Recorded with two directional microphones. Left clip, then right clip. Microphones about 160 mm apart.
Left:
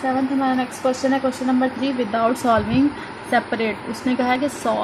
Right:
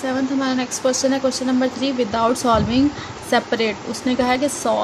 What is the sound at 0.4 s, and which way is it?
Speech, 5° right (ahead or behind).